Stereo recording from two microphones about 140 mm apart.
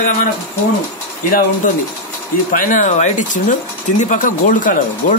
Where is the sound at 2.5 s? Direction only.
70° left (ahead or behind).